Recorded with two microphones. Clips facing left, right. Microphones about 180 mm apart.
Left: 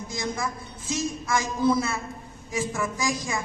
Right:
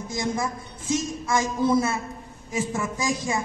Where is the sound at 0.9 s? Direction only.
20° right (ahead or behind).